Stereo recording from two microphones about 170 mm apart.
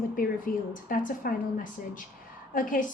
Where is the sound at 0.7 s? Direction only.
55° left (ahead or behind).